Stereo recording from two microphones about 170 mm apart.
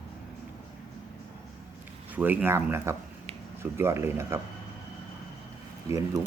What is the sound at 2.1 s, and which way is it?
A man's voice, 10° right (ahead or behind).